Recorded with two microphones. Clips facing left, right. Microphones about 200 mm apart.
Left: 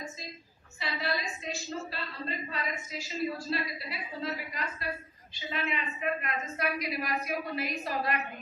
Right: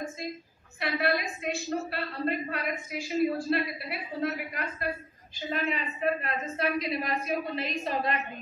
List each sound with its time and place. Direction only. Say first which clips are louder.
0.7 s a woman's voice: right 6 dB; 60° right (ahead or behind)
5.5 s a woman's voice: right 3 dB; 40° right (ahead or behind); by 8.2 s 25° right (ahead or behind)